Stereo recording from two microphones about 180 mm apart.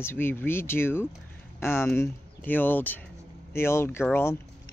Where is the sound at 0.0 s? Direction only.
10° left (ahead or behind).